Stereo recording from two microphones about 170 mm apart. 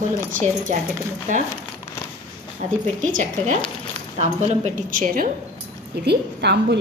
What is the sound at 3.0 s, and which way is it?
A woman's voice, 50° right (ahead or behind).